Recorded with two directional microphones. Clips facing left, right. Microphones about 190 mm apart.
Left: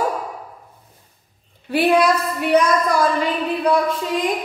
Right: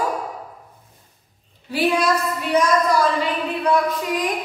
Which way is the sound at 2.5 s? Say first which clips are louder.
Left 3 dB; 60° left (ahead or behind).